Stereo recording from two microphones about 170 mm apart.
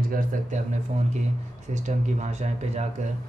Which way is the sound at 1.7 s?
45° right (ahead or behind).